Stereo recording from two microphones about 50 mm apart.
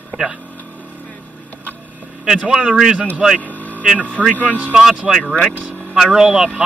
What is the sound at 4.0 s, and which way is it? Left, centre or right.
Speech, right.